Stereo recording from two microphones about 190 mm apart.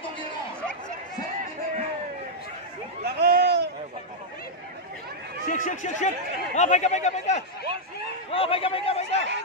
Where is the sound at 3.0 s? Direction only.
55° right (ahead or behind).